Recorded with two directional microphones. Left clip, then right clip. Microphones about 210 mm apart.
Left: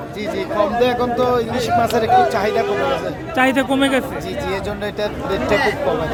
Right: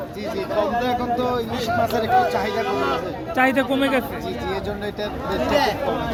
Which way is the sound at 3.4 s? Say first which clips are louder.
Left 3 dB; 5° left (ahead or behind).